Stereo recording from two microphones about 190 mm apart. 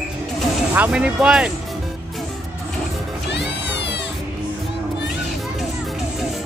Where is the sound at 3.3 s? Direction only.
65° left (ahead or behind).